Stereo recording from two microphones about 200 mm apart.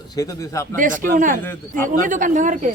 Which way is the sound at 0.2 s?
15° left (ahead or behind).